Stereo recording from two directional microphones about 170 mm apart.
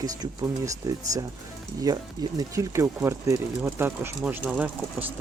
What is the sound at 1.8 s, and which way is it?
Speech, 20° right (ahead or behind).